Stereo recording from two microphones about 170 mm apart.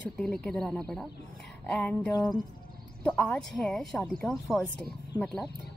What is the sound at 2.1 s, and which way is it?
Speech, 20° left (ahead or behind).